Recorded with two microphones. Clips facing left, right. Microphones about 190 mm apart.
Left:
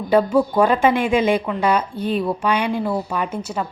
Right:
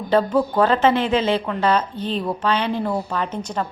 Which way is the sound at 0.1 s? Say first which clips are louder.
Left 2 dB; 10° left (ahead or behind).